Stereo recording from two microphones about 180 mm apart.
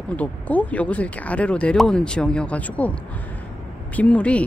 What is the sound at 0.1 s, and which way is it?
Speech, 10° left (ahead or behind).